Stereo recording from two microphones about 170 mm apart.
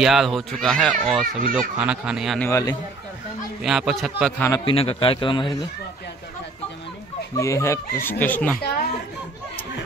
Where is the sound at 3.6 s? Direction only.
5° right (ahead or behind).